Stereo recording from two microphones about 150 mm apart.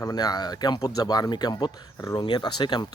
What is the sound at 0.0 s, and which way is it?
Speech, 25° left (ahead or behind).